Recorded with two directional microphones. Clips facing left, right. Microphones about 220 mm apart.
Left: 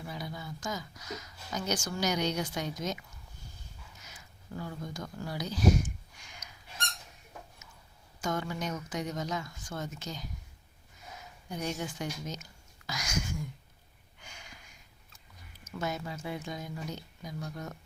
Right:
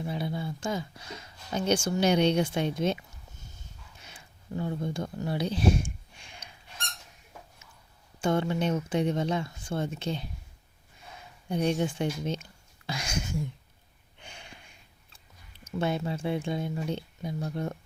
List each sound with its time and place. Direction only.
0.0 s speech: 25° right (ahead or behind)
4.0 s a sound: 25° right (ahead or behind)
8.2 s speech: 30° right (ahead or behind)
11.4 s speech: 30° right (ahead or behind)
14.2 s a sound: 30° right (ahead or behind)
15.6 s speech: 30° right (ahead or behind)